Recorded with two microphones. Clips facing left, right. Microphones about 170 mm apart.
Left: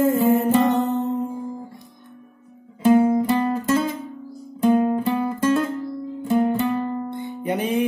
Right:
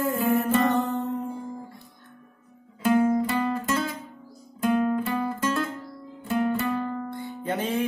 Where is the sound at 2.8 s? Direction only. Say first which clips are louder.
Left 5 dB; 15° left (ahead or behind).